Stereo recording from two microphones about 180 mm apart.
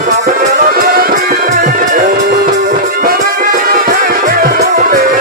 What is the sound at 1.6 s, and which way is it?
Music, 40° right (ahead or behind).